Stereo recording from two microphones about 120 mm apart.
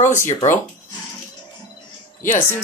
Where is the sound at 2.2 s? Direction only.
20° left (ahead or behind).